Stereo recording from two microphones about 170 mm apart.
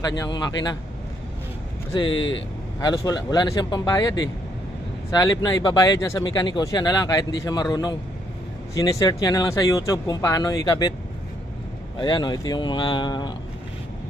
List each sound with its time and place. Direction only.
0.0 s speech: 20° left (ahead or behind)
1.9 s speech: 25° left (ahead or behind)
8.7 s speech: 20° left (ahead or behind)
12.0 s speech: 25° left (ahead or behind)